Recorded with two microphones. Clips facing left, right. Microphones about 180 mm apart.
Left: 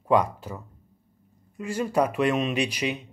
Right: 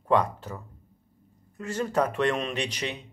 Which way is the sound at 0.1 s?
10° left (ahead or behind).